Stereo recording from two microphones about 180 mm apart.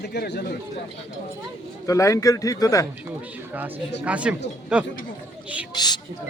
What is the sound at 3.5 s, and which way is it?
Speech, 10° right (ahead or behind).